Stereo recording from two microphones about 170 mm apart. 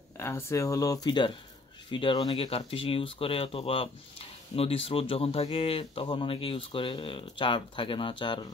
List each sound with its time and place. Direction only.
0.2 s speech: 15° left (ahead or behind)